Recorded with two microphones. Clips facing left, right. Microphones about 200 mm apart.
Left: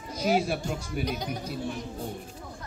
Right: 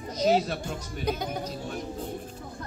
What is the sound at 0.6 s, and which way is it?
Speech, 55° right (ahead or behind).